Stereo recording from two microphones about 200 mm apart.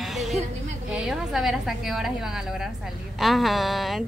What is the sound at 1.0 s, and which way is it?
Speech, centre (ahead or behind).